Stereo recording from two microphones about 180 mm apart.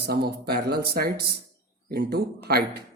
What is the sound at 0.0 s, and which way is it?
Speech, 60° right (ahead or behind).